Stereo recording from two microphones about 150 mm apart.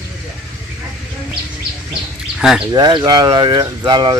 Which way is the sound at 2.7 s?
30° right (ahead or behind).